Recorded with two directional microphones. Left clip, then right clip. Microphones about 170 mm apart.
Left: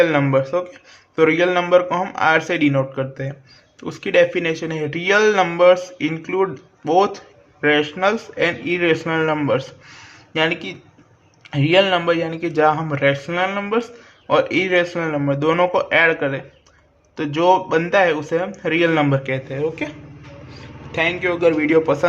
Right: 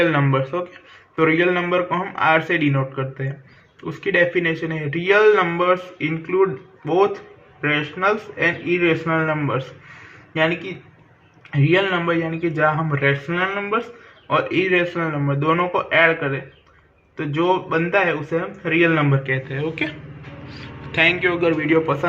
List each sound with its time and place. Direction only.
0.0 s a man's voice: 40° left (ahead or behind); by 9.6 s 55° left (ahead or behind)
11.5 s a man's voice: 55° left (ahead or behind)
17.2 s a man's voice: 60° left (ahead or behind)
19.5 s speech: 15° left (ahead or behind)
20.5 s a sound: 5° left (ahead or behind)
21.2 s a man's voice: 30° left (ahead or behind)